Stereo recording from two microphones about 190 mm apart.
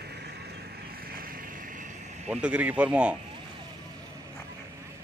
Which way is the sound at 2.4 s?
5° right (ahead or behind).